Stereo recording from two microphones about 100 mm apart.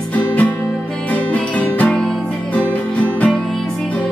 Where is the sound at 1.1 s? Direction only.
15° left (ahead or behind).